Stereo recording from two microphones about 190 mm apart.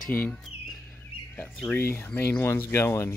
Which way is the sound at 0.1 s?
10° left (ahead or behind).